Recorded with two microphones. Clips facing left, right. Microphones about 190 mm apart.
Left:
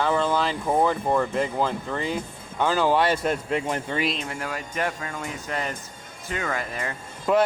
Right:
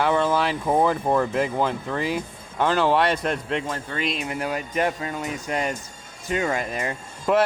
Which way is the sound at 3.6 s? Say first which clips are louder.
Left 3 dB; 20° left (ahead or behind).